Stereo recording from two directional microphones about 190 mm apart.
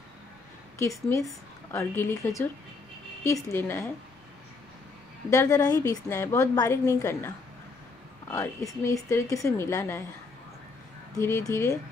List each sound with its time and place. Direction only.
0.7 s a woman's voice: 15° left (ahead or behind)
3.4 s a woman's voice: 15° left (ahead or behind)
5.3 s a woman's voice: 15° left (ahead or behind)
8.3 s a woman's voice: 15° left (ahead or behind)
11.1 s a woman's voice: 15° left (ahead or behind)